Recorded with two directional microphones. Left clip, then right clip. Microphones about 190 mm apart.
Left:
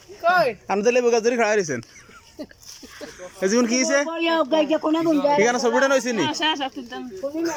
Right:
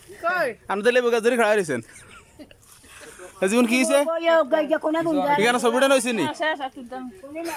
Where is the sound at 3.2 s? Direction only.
5° right (ahead or behind).